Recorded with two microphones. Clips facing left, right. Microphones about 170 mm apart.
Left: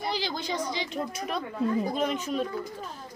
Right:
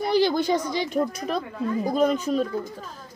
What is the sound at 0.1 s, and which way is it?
Speech, 55° right (ahead or behind).